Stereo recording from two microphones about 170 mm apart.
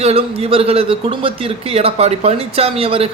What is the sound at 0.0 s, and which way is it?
A man's voice, 35° right (ahead or behind).